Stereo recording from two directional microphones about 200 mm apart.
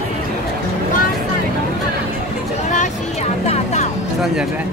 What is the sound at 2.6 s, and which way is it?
Music, 35° left (ahead or behind).